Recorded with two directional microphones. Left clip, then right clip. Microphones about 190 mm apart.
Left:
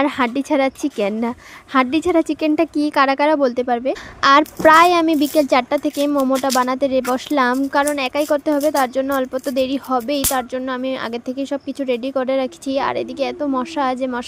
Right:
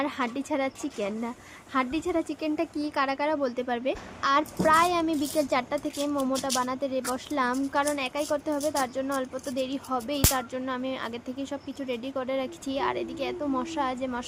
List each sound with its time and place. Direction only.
0.0 s a woman's voice: 50° left (ahead or behind); by 3.9 s 35° left (ahead or behind)
4.2 s a woman's voice: 50° left (ahead or behind); by 6.5 s 35° left (ahead or behind)
6.5 s a woman's voice: 45° left (ahead or behind)